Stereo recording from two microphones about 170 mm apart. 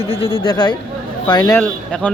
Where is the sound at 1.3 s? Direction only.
20° left (ahead or behind).